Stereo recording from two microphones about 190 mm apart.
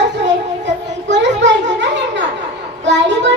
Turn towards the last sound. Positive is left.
turn(degrees=-70)  # may be behind; listen again after turning